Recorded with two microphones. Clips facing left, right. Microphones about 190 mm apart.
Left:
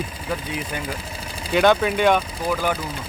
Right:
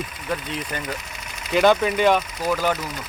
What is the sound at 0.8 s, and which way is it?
Engine, 30° left (ahead or behind).